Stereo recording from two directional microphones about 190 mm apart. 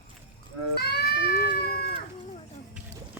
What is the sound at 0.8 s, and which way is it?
Cat, 55° left (ahead or behind).